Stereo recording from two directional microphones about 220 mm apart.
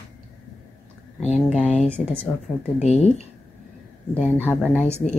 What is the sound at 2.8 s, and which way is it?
Speech, 30° left (ahead or behind).